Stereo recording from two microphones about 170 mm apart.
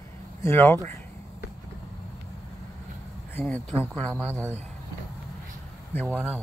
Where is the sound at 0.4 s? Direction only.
15° left (ahead or behind).